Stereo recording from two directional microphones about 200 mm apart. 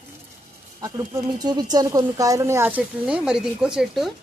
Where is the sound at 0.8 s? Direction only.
20° right (ahead or behind).